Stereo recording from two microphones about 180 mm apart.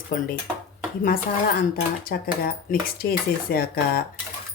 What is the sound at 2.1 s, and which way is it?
Speech, 55° left (ahead or behind).